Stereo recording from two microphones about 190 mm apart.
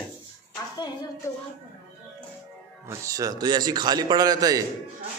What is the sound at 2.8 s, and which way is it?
A man's voice, 20° right (ahead or behind).